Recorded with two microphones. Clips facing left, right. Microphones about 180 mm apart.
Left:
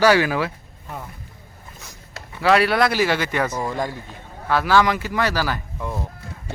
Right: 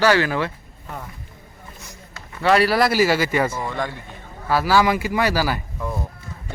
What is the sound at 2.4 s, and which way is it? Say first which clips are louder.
Speech: even; centre (ahead or behind).